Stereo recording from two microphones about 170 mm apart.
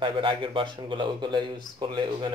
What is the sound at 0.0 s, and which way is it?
Speech, 30° right (ahead or behind).